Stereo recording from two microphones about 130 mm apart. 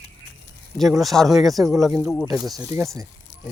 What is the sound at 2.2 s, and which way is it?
Speech, 30° right (ahead or behind).